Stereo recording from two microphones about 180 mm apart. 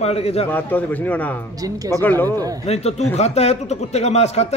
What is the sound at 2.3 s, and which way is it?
Speech, 20° right (ahead or behind).